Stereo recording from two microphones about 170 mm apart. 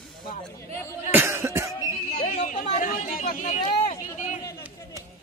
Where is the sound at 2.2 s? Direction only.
45° left (ahead or behind).